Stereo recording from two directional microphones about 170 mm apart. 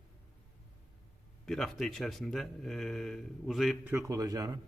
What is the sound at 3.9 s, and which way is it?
Speech, 20° right (ahead or behind).